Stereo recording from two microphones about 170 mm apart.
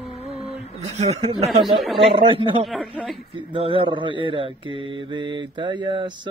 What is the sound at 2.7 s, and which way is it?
Speech, 5° left (ahead or behind).